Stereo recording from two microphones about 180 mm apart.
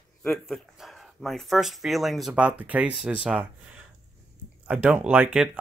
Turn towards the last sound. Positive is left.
turn(degrees=-5)  # may be behind; listen again after turning